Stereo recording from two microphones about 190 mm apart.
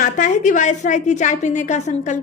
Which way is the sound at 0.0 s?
40° left (ahead or behind).